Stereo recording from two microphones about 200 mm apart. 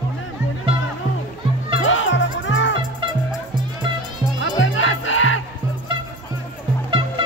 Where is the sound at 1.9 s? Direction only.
70° left (ahead or behind).